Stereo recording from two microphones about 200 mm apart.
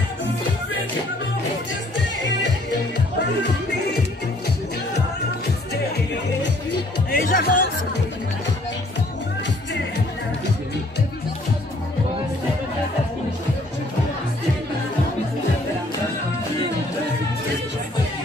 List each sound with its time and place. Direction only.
7.1 s music: 45° left (ahead or behind)